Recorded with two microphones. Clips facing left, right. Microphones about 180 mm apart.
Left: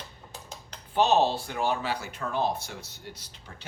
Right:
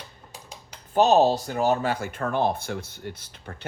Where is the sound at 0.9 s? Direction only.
45° right (ahead or behind).